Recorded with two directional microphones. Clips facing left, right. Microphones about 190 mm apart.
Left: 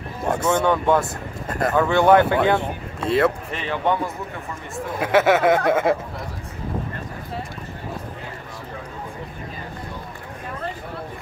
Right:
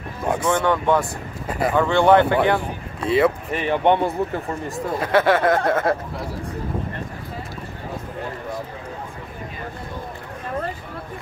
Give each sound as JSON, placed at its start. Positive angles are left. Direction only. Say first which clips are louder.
{"t": 0.4, "sound": "speech", "louder": "left 1 dB", "side_deg": 5}
{"t": 1.5, "sound": "speech", "louder": "right 1 dB", "side_deg": -5}
{"t": 1.8, "sound": "speech", "louder": "even", "side_deg": 5}
{"t": 3.6, "sound": "speech", "louder": "right 5 dB", "side_deg": -20}
{"t": 5.0, "sound": "speech", "louder": "left 1 dB", "side_deg": 10}